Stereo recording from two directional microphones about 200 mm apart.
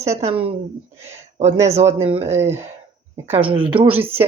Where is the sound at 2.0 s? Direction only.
30° right (ahead or behind).